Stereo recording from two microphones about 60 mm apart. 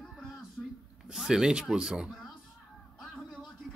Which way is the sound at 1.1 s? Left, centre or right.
Centre.